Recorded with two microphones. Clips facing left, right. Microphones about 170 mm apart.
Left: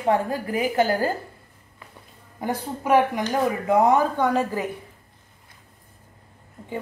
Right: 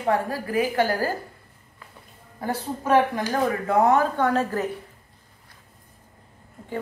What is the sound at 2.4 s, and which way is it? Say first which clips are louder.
Speech: left 1 dB; 15° left (ahead or behind).